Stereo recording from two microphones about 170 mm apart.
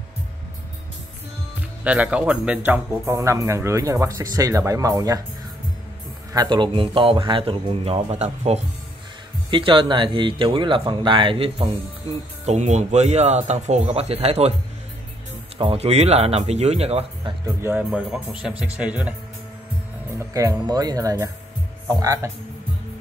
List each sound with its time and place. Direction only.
1.9 s speech: 5° right (ahead or behind)
6.3 s speech: 25° right (ahead or behind)
15.5 s speech: 35° right (ahead or behind)
17.6 s speech: 10° right (ahead or behind)
20.2 s speech: 20° right (ahead or behind)